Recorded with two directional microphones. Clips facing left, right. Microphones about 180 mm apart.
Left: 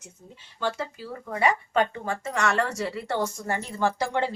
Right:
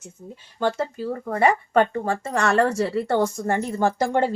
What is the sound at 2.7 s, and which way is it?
Speech, 55° right (ahead or behind).